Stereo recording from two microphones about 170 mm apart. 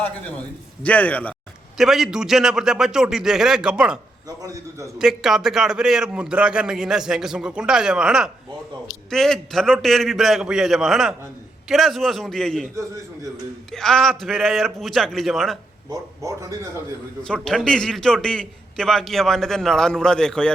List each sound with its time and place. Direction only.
0.9 s a man's voice: 10° left (ahead or behind)
4.3 s speech: 20° right (ahead or behind)
4.9 s a man's voice: 5° right (ahead or behind)
15.9 s speech: 20° right (ahead or behind)
17.2 s a man's voice: 5° left (ahead or behind)